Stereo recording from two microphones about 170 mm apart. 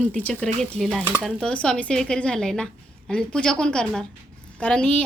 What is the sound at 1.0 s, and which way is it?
Speech, 10° right (ahead or behind).